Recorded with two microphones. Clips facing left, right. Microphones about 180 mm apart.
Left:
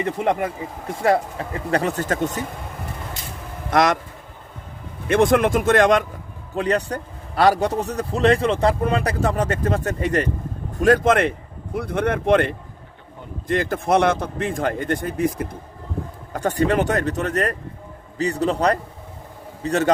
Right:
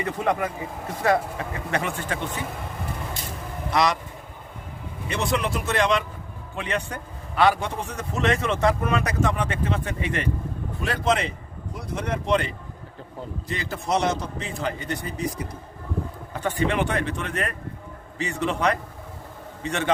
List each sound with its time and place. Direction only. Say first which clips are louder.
0.0 s a man's voice: left 3 dB; 25° left (ahead or behind); by 2.4 s 45° left (ahead or behind)
3.7 s speech: left 4 dB; 50° left (ahead or behind)
5.0 s a man's voice: left 10 dB; 50° left (ahead or behind)
16.3 s a man's voice: left 5 dB; 45° left (ahead or behind)